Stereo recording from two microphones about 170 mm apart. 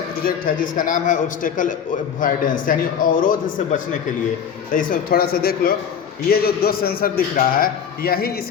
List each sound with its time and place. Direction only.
0.3 s a man's voice: 55° left (ahead or behind)